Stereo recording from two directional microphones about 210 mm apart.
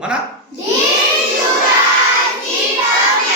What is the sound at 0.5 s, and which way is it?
Speech, 55° left (ahead or behind).